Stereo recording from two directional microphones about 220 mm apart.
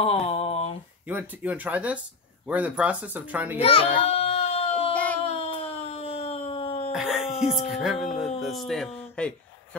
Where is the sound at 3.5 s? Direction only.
25° left (ahead or behind).